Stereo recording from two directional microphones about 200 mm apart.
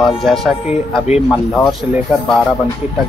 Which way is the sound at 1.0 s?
30° left (ahead or behind).